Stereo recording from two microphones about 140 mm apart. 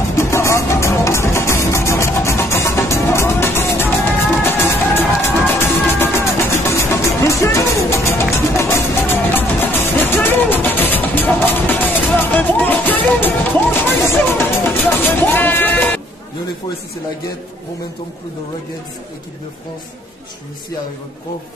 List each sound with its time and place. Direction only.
0.1 s music: 20° left (ahead or behind)